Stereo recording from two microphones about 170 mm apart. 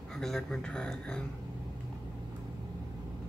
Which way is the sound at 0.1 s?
Centre (ahead or behind).